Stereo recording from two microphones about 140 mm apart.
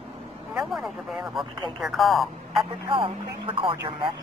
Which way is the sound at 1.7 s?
Centre (ahead or behind).